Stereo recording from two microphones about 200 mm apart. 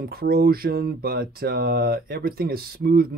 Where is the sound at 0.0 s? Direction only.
50° right (ahead or behind).